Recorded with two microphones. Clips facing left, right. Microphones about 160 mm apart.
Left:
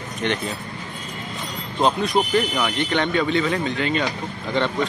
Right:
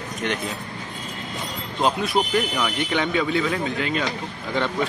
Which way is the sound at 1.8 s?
5° right (ahead or behind).